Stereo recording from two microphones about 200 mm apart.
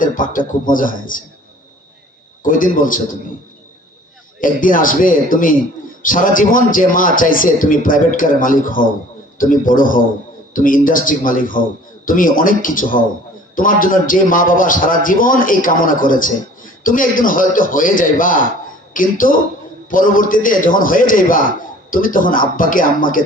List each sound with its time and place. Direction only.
0.0 s a man's voice: 40° left (ahead or behind)
2.4 s a man's voice: 45° left (ahead or behind)
4.4 s a man's voice: 45° left (ahead or behind)